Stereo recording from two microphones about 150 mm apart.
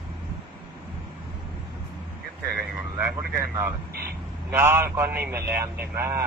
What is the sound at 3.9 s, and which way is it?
Speech, 90° right.